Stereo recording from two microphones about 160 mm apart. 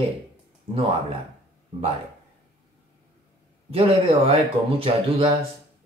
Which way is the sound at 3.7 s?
35° right (ahead or behind).